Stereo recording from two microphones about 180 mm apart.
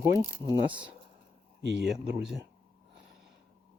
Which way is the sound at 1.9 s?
Centre (ahead or behind).